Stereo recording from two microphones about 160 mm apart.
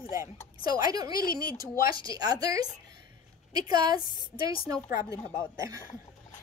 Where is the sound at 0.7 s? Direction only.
25° right (ahead or behind).